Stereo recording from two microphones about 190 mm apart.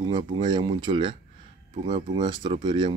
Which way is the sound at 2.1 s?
25° right (ahead or behind).